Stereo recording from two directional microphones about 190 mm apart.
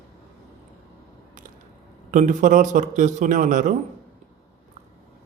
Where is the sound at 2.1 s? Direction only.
40° right (ahead or behind).